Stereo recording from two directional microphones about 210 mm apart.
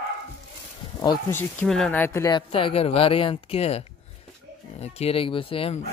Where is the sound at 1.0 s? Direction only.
15° left (ahead or behind).